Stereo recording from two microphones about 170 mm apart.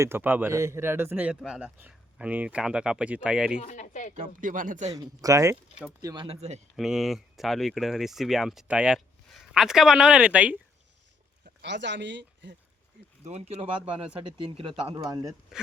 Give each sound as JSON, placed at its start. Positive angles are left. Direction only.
{"t": 0.0, "sound": "a man's voice", "side_deg": -10}
{"t": 3.6, "sound": "speech", "side_deg": 45}
{"t": 4.4, "sound": "speech", "side_deg": -50}
{"t": 4.9, "sound": "speech", "side_deg": -20}
{"t": 6.2, "sound": "speech", "side_deg": -40}
{"t": 6.7, "sound": "speech", "side_deg": 0}
{"t": 11.6, "sound": "speech", "side_deg": -90}
{"t": 13.2, "sound": "speech", "side_deg": -40}